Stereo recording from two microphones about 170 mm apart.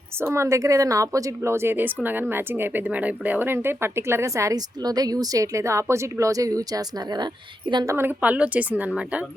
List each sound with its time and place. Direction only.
0.2 s a woman's voice: 15° right (ahead or behind)
7.9 s a woman's voice: 10° right (ahead or behind)